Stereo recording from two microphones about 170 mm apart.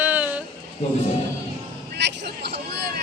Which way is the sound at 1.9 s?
80° right.